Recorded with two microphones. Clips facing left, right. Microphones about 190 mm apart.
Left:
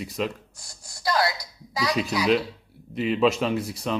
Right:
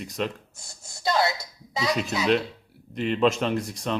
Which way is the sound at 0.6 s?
25° right (ahead or behind).